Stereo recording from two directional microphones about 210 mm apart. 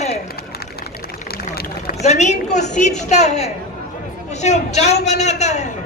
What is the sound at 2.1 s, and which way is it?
A man's voice, 35° left (ahead or behind).